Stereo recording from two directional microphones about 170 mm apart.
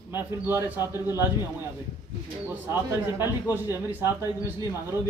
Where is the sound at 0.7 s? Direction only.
20° left (ahead or behind).